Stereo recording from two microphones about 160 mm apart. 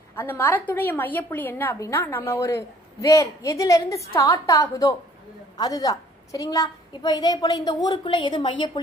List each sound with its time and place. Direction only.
0.2 s a woman's voice: 15° left (ahead or behind); by 8.8 s 30° left (ahead or behind)